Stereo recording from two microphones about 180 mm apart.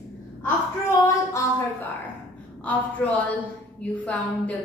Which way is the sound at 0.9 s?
15° left (ahead or behind).